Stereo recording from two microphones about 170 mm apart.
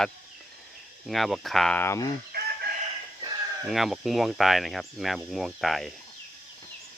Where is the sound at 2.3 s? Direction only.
70° right (ahead or behind).